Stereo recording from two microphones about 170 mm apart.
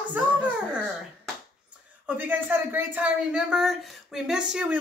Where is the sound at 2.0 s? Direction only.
10° right (ahead or behind).